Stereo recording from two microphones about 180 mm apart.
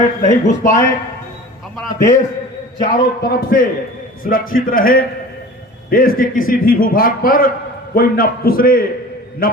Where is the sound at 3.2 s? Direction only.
55° left (ahead or behind).